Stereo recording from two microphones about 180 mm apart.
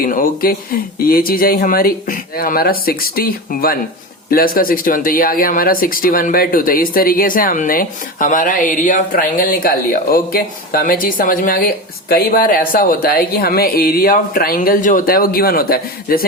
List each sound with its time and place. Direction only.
0.0 s speech: 50° left (ahead or behind)